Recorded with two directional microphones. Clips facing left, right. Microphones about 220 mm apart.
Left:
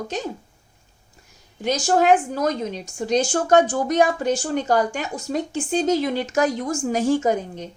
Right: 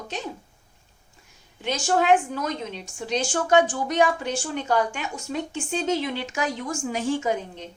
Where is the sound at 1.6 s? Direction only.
40° left (ahead or behind).